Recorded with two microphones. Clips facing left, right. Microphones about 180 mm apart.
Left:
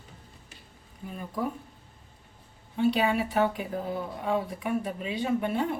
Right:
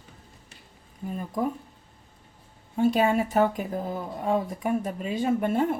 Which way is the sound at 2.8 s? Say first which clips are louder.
Right 3 dB; 45° right (ahead or behind).